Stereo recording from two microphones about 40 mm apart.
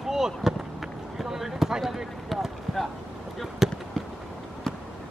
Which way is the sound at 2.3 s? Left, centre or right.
Centre.